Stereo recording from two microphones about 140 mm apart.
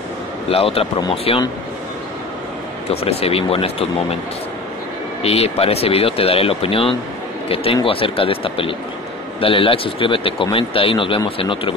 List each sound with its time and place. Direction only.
0.5 s speech: 45° left (ahead or behind)
2.9 s speech: 45° left (ahead or behind)
5.2 s speech: 45° left (ahead or behind)